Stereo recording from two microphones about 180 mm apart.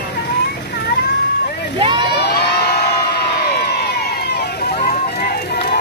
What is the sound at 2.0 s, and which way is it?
Crowd, 65° left (ahead or behind).